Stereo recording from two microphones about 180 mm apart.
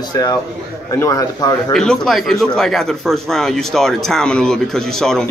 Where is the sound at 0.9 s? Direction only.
20° left (ahead or behind).